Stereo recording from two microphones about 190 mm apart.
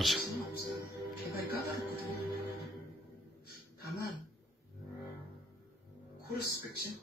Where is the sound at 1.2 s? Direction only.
55° left (ahead or behind).